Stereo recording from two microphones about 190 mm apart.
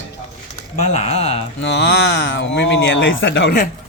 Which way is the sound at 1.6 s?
65° left (ahead or behind).